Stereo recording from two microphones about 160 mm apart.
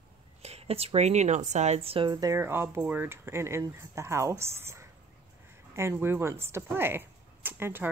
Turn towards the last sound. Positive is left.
turn(degrees=-15)  # may be behind; listen again after turning